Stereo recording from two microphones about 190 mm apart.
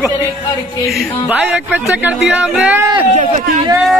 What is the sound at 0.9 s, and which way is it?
Music, 5° right (ahead or behind).